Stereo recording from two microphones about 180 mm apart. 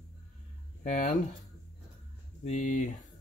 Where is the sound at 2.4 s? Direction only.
40° left (ahead or behind).